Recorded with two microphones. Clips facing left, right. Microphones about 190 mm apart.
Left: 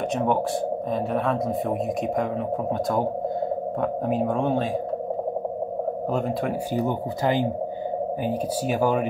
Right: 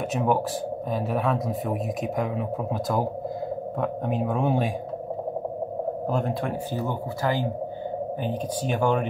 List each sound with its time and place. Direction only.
0.1 s speech: 5° right (ahead or behind)
6.1 s speech: centre (ahead or behind)
6.7 s speech: 15° left (ahead or behind)
8.2 s speech: 5° left (ahead or behind)